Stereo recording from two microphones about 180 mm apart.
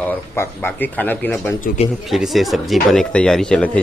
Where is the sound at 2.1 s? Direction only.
Centre (ahead or behind).